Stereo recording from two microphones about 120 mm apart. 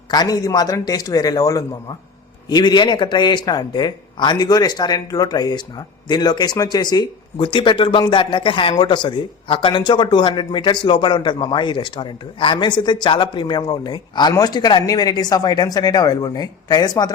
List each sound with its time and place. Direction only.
0.1 s a man's voice: 35° left (ahead or behind)